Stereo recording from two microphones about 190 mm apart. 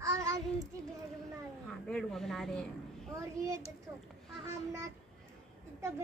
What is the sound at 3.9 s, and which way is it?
Child singing, 15° right (ahead or behind).